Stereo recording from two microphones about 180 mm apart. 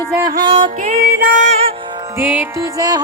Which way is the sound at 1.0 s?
55° right (ahead or behind).